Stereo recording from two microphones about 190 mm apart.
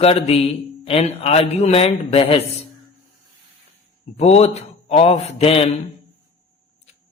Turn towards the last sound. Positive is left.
turn(degrees=30)  # may be behind; listen again after turning